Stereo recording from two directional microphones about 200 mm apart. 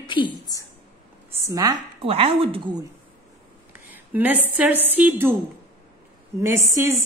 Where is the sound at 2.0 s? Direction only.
30° right (ahead or behind).